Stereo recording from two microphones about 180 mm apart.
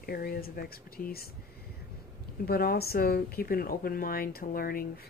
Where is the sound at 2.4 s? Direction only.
60° left (ahead or behind).